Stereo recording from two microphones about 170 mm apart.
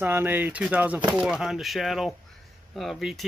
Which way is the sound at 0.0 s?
10° right (ahead or behind).